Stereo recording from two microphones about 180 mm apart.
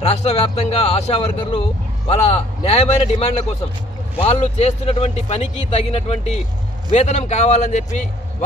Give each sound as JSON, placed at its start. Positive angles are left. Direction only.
{"t": 0.0, "sound": "speech", "side_deg": 35}